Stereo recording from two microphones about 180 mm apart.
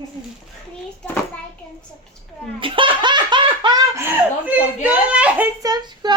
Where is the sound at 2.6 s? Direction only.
30° right (ahead or behind); by 5.4 s 5° right (ahead or behind).